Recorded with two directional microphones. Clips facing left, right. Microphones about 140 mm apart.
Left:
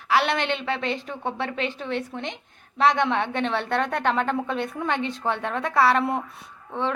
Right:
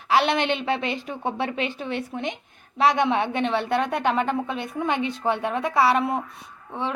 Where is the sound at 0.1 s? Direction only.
20° right (ahead or behind).